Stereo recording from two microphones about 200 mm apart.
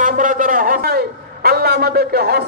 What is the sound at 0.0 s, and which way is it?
A man's voice, 40° right (ahead or behind).